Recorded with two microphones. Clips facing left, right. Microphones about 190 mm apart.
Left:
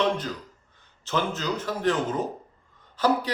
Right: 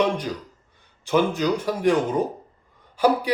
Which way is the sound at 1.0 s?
15° right (ahead or behind).